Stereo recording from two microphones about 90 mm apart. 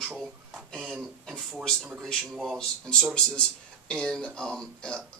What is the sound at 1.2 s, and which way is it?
Speech, 5° left (ahead or behind).